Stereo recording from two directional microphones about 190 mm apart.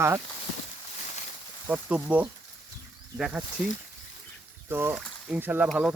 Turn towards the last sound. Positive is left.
turn(degrees=-5)  # may be behind; listen again after turning